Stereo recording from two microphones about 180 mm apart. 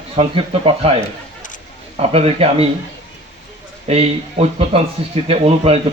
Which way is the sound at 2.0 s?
35° right (ahead or behind).